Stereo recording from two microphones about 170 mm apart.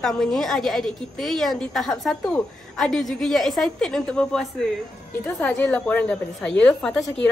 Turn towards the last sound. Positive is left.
turn(degrees=5)  # may be behind; listen again after turning